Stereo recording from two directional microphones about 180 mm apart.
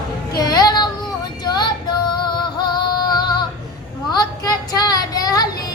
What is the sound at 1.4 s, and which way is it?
Female singing, 25° left (ahead or behind).